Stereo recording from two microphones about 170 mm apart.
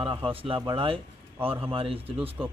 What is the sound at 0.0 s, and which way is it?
A man's voice, 30° right (ahead or behind).